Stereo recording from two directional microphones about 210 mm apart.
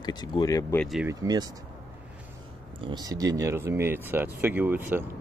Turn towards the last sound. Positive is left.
turn(degrees=-10)  # may be behind; listen again after turning